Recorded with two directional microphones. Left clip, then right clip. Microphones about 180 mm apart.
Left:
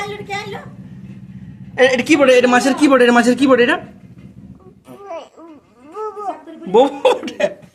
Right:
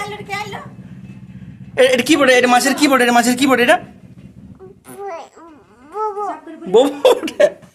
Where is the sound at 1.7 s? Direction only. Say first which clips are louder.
Even; 40° right (ahead or behind).